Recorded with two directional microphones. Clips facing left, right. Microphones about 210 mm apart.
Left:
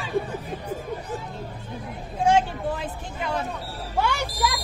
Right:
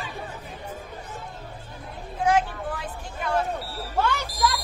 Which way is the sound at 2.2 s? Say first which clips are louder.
Left 2 dB; 25° left (ahead or behind).